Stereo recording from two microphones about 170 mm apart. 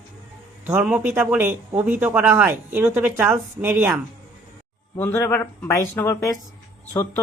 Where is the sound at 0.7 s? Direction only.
10° right (ahead or behind).